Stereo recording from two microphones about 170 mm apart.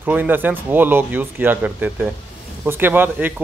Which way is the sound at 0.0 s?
10° right (ahead or behind).